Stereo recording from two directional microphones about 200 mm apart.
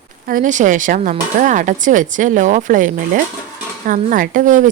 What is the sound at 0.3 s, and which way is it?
Speech, 40° right (ahead or behind).